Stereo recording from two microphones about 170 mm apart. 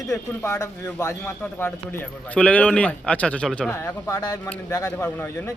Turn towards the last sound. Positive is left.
turn(degrees=15)  # may be behind; listen again after turning